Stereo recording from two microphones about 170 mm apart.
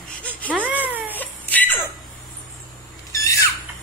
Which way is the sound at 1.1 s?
10° left (ahead or behind).